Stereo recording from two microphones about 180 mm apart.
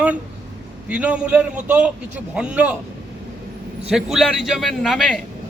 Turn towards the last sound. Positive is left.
turn(degrees=0)  # may be behind; listen again after turning